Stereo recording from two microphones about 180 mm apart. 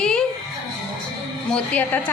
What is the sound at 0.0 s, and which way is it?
Music, 5° left (ahead or behind).